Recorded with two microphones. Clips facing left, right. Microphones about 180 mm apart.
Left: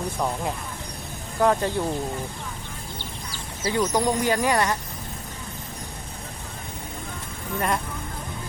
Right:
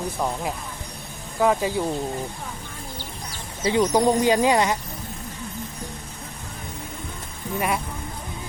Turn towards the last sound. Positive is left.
turn(degrees=-10)  # may be behind; listen again after turning